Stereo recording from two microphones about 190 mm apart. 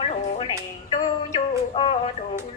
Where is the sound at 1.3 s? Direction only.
30° left (ahead or behind).